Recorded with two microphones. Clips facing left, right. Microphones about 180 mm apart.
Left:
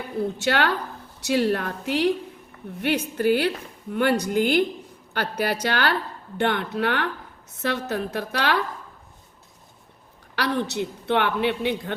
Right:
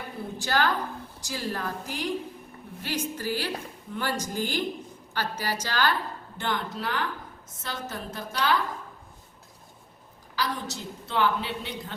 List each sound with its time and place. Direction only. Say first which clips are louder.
0.3 s a woman's voice: left 1 dB; 70° left (ahead or behind)
10.3 s a woman's voice: left 7 dB; 65° left (ahead or behind)